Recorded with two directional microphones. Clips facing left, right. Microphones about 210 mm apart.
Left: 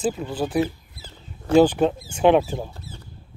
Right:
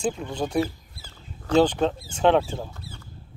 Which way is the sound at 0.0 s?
5° left (ahead or behind).